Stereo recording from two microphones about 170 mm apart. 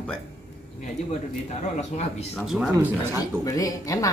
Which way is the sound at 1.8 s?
40° left (ahead or behind).